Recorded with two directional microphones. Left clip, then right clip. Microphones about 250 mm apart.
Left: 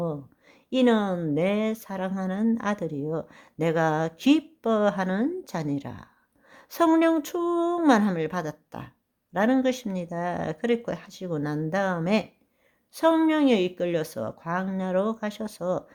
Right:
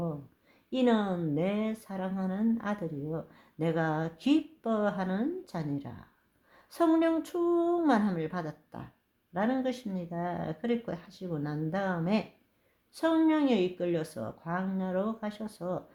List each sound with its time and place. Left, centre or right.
0.7 s speech: left